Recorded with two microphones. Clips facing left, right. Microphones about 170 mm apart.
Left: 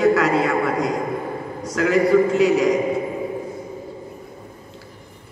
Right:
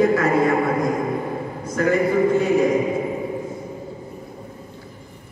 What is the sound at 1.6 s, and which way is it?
A man's voice, 90° left.